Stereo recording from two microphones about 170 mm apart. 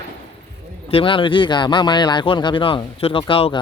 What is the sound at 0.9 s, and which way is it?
Speech, 30° left (ahead or behind).